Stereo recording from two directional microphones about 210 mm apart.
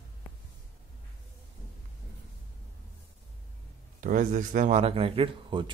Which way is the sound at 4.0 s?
40° right (ahead or behind).